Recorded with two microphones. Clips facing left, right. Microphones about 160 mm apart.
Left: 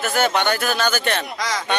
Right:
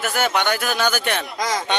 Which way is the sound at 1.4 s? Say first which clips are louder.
Right 2 dB; 45° right (ahead or behind).